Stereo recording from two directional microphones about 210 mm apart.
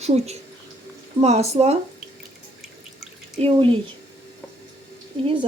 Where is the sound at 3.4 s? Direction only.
25° right (ahead or behind).